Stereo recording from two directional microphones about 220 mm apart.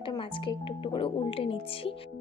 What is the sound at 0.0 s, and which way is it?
Speech, 20° left (ahead or behind).